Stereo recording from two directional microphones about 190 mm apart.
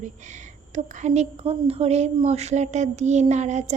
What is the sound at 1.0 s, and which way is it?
A woman's voice, 35° right (ahead or behind).